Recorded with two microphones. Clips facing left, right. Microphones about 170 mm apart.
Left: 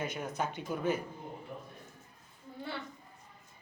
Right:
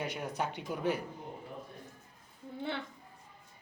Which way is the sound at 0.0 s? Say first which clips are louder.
Even; 15° right (ahead or behind).